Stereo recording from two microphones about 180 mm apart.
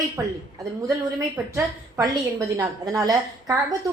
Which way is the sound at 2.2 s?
20° right (ahead or behind).